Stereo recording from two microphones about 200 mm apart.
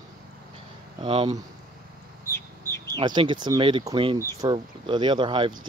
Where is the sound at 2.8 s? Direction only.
20° right (ahead or behind).